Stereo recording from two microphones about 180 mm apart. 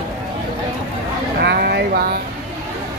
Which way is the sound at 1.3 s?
65° right (ahead or behind).